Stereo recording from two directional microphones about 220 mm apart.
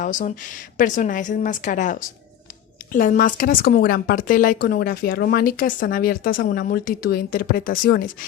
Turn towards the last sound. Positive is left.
turn(degrees=40)  # may be behind; listen again after turning